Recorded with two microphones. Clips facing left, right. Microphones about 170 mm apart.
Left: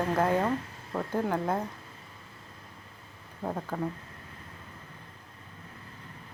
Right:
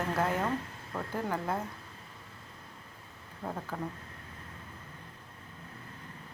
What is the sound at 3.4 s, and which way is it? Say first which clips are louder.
Speech: left 4 dB; 10° left (ahead or behind).